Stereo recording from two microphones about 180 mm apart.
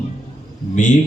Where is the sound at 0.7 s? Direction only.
45° left (ahead or behind).